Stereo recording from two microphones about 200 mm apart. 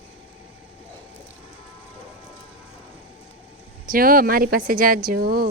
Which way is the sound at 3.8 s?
45° right (ahead or behind).